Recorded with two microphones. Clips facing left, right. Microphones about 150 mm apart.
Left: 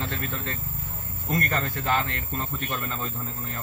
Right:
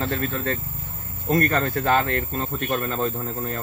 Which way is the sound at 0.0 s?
45° right (ahead or behind).